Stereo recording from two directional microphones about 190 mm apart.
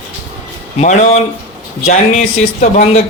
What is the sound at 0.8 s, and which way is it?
A man's voice, 35° left (ahead or behind).